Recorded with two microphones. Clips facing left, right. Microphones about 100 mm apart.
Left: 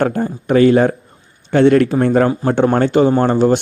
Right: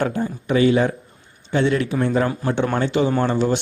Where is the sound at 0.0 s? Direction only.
50° left (ahead or behind).